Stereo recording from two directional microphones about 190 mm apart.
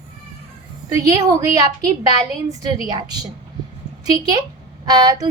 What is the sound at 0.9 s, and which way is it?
A woman's voice, 15° right (ahead or behind).